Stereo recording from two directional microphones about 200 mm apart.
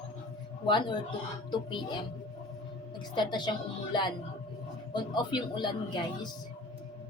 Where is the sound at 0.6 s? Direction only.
20° left (ahead or behind).